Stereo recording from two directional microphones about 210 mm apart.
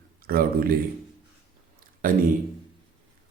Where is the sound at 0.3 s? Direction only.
45° right (ahead or behind).